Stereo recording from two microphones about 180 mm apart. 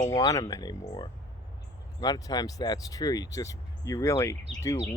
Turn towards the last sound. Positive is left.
turn(degrees=15)  # may be behind; listen again after turning